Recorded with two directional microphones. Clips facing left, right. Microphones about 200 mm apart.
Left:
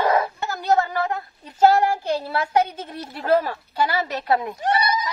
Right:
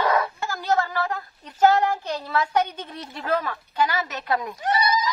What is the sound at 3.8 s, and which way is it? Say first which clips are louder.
Speech: left 6 dB; 35° left (ahead or behind).